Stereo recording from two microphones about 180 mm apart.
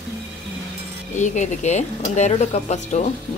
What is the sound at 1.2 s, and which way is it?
Speech, 40° left (ahead or behind).